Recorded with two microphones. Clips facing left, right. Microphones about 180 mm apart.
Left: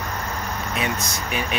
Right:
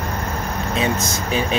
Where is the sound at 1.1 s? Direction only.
30° right (ahead or behind).